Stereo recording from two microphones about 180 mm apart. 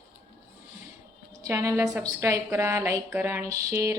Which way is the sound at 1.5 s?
15° right (ahead or behind).